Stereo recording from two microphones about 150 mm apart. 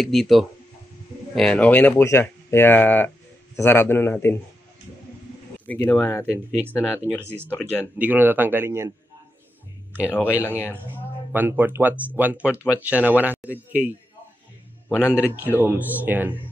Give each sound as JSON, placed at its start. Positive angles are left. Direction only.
{"t": 0.0, "sound": "speech", "side_deg": 0}
{"t": 5.9, "sound": "speech", "side_deg": 15}
{"t": 8.0, "sound": "speech", "side_deg": -10}
{"t": 10.0, "sound": "speech", "side_deg": 15}
{"t": 10.3, "sound": "speech", "side_deg": -10}
{"t": 14.9, "sound": "a man's voice", "side_deg": 15}
{"t": 15.3, "sound": "speech", "side_deg": -10}